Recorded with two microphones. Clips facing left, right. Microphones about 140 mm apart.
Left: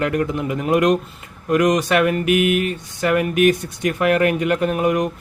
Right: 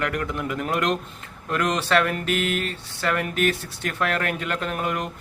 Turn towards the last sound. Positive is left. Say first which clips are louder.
# left 9 dB
turn(degrees=20)  # may be behind; listen again after turning